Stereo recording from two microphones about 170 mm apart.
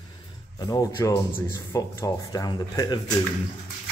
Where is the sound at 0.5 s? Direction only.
20° left (ahead or behind).